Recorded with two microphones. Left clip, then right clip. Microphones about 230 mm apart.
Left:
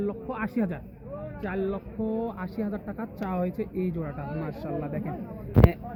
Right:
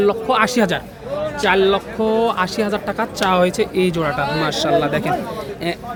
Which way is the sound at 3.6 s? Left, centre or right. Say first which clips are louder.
Right 14 dB; right.